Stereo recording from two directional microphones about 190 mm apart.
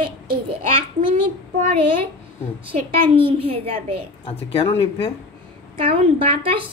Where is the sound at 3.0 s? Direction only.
30° right (ahead or behind).